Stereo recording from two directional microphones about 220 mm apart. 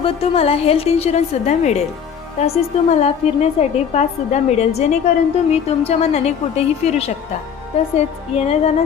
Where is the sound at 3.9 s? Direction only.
30° left (ahead or behind).